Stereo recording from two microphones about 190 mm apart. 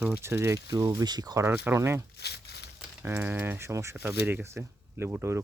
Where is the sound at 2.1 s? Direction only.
60° left (ahead or behind).